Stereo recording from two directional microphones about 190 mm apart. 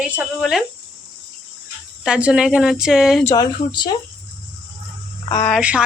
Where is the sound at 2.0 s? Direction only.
5° right (ahead or behind).